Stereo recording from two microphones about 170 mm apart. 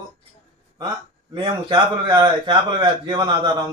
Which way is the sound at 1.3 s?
25° right (ahead or behind).